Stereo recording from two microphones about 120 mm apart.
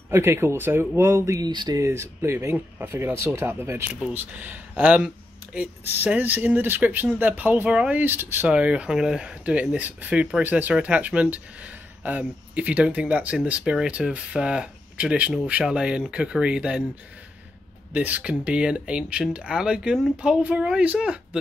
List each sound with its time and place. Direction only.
0.1 s speech: 20° right (ahead or behind)
1.5 s speech: 40° right (ahead or behind)
1.8 s speech: 20° right (ahead or behind)
17.9 s speech: 10° right (ahead or behind)